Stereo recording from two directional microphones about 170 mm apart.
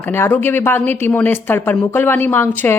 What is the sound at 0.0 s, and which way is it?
Speech, 15° left (ahead or behind).